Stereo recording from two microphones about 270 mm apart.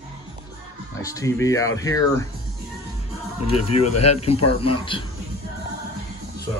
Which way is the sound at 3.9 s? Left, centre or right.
Left.